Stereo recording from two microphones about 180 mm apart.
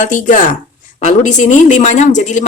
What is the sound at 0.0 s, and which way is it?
A woman's voice, 45° left (ahead or behind).